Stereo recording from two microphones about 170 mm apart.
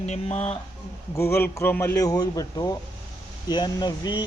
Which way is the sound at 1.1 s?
15° left (ahead or behind).